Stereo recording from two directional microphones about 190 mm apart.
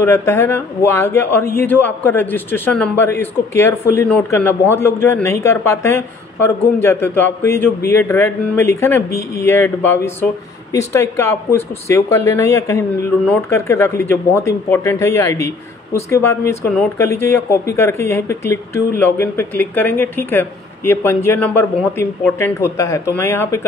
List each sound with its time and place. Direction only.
0.0 s speech: 15° left (ahead or behind)